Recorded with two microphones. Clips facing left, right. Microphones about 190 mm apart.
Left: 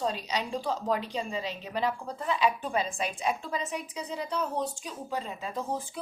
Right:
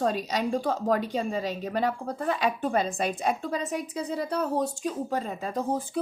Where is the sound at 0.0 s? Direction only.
50° right (ahead or behind).